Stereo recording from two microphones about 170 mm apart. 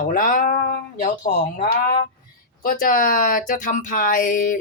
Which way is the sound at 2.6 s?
55° left (ahead or behind).